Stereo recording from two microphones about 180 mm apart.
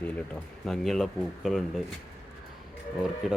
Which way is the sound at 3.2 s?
Centre (ahead or behind).